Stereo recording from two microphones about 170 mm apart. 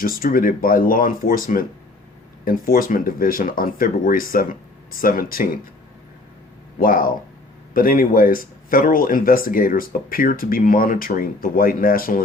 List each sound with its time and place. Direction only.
0.0 s speech: 55° left (ahead or behind)
6.7 s speech: 55° left (ahead or behind)